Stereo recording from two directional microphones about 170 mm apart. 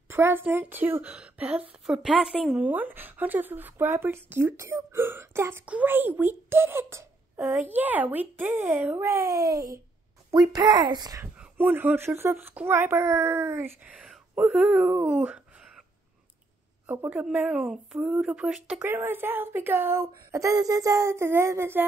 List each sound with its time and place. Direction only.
0.1 s speech: 15° right (ahead or behind)
11.3 s speech: 10° right (ahead or behind)
16.8 s speech: 10° right (ahead or behind)